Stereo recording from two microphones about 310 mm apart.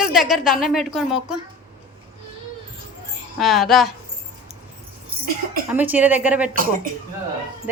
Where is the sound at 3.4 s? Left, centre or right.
Centre.